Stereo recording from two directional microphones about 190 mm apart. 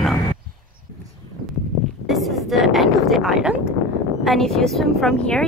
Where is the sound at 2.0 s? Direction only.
Centre (ahead or behind).